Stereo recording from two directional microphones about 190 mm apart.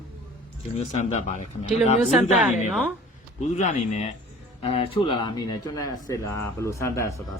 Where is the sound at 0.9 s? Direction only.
35° left (ahead or behind).